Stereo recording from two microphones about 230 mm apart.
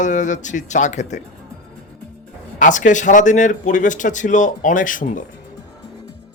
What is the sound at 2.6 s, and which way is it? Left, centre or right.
Speech, left.